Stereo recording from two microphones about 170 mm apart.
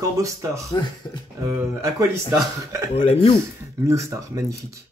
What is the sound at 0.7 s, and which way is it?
Speech, 25° left (ahead or behind).